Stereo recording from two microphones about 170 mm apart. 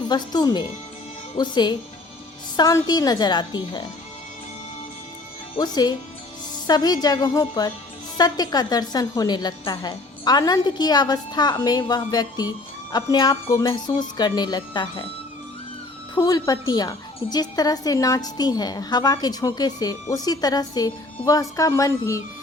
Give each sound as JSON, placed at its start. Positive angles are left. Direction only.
{"t": 0.1, "sound": "a woman's voice", "side_deg": 25}
{"t": 5.5, "sound": "a woman's voice", "side_deg": 25}
{"t": 16.1, "sound": "a woman's voice", "side_deg": 25}